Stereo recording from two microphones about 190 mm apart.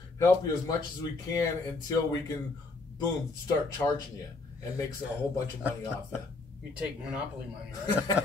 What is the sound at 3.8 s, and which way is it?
Speech, 5° left (ahead or behind).